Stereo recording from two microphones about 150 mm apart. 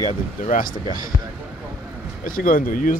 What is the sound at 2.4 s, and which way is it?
Speech, 65° left (ahead or behind).